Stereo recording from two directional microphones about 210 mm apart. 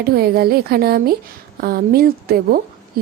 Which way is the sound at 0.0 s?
45° right (ahead or behind).